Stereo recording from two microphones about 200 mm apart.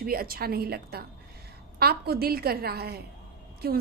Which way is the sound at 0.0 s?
50° right (ahead or behind).